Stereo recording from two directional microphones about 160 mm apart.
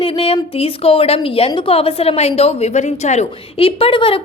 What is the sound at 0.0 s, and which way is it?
A woman's voice, 35° left (ahead or behind).